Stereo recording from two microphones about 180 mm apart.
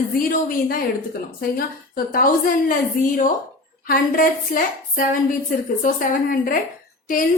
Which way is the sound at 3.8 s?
50° left (ahead or behind).